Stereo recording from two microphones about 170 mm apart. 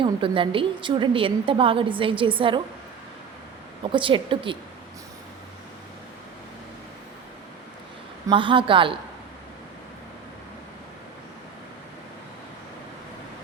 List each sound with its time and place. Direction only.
0.0 s a woman's voice: 30° right (ahead or behind)
3.9 s a man's voice: 30° right (ahead or behind)
8.3 s a man's voice: 30° right (ahead or behind)